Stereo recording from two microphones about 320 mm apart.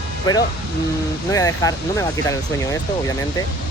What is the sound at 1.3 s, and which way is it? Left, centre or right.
Speech, centre.